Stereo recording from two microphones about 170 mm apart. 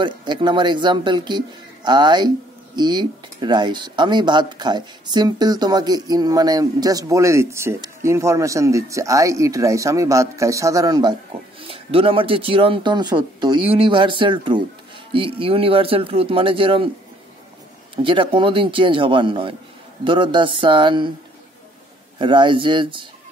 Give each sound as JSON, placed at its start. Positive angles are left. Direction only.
{"t": 0.0, "sound": "speech", "side_deg": -25}
{"t": 17.9, "sound": "speech", "side_deg": -30}
{"t": 22.2, "sound": "speech", "side_deg": -30}